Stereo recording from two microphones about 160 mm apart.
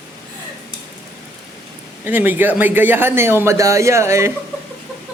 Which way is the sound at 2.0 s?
10° right (ahead or behind).